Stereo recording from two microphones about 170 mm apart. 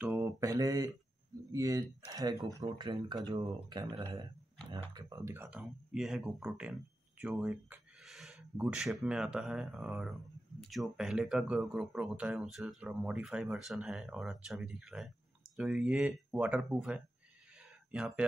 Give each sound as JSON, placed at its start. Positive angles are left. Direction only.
{"t": 0.2, "sound": "mantra", "side_deg": -20}
{"t": 1.5, "sound": "speech", "side_deg": -20}
{"t": 5.6, "sound": "speech", "side_deg": -5}